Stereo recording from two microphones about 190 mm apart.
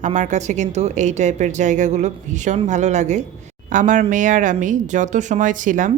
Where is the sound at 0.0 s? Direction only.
40° right (ahead or behind).